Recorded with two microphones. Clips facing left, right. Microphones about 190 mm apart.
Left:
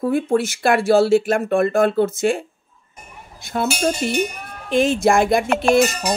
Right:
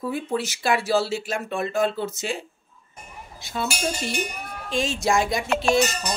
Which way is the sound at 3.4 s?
55° left (ahead or behind).